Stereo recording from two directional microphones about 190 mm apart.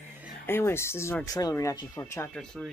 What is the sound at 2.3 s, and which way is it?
Speech, 5° left (ahead or behind).